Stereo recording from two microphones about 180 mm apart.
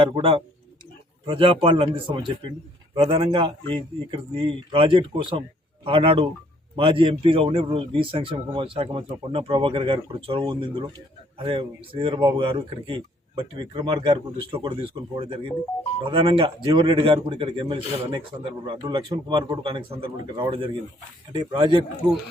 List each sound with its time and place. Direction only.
0.0 s speech: 30° right (ahead or behind)